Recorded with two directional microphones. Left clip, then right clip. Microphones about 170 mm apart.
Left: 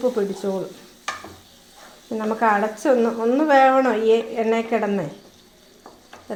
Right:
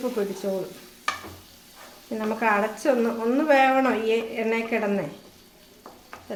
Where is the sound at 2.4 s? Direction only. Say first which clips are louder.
Left 4 dB; 35° left (ahead or behind).